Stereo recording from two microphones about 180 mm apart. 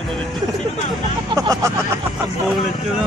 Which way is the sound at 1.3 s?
20° right (ahead or behind).